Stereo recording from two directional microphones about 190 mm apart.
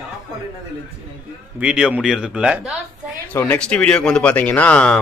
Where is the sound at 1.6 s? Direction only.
5° right (ahead or behind).